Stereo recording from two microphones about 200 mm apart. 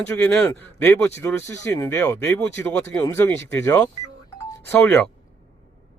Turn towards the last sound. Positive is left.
turn(degrees=10)  # may be behind; listen again after turning